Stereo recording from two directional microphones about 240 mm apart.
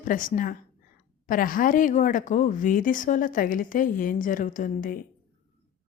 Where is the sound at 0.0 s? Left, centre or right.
Left.